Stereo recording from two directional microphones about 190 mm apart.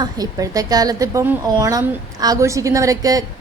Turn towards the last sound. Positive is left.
turn(degrees=-20)  # may be behind; listen again after turning